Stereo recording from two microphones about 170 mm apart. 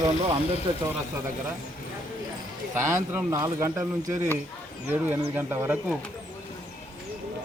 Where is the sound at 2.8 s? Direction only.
15° right (ahead or behind).